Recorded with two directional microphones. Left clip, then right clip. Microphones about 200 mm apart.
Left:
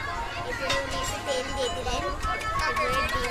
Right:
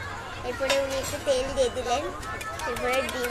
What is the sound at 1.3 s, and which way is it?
Speech, 15° right (ahead or behind).